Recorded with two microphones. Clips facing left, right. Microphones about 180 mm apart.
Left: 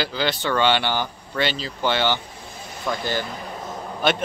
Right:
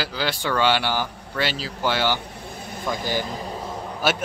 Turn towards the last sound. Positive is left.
turn(degrees=-5)  # may be behind; listen again after turning